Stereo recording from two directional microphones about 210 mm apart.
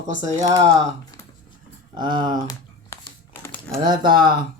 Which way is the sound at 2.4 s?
15° left (ahead or behind).